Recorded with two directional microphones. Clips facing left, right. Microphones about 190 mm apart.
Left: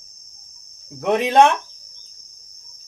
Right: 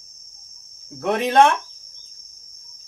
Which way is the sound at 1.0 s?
15° left (ahead or behind).